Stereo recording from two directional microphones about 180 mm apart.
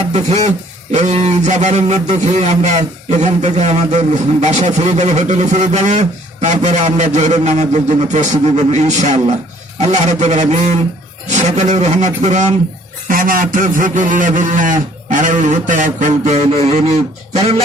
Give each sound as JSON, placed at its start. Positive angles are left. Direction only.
{"t": 0.1, "sound": "a man's voice", "side_deg": -40}
{"t": 13.1, "sound": "speech", "side_deg": -50}